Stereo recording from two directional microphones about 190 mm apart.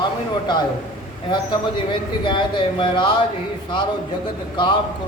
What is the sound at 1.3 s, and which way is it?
A man's voice, 25° left (ahead or behind).